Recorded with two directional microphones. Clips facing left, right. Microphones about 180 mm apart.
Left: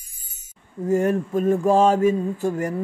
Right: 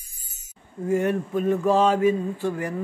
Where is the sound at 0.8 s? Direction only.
40° left (ahead or behind).